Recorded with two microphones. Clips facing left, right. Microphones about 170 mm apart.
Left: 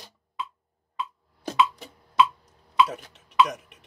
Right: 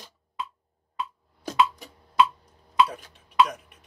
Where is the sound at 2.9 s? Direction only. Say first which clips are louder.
Even; 80° left.